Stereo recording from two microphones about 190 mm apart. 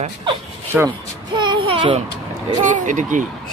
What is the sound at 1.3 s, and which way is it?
Speech, 25° right (ahead or behind).